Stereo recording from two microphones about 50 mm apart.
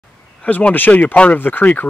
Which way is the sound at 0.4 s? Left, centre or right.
Left.